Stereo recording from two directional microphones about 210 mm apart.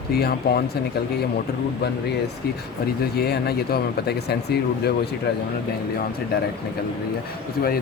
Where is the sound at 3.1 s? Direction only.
50° left (ahead or behind).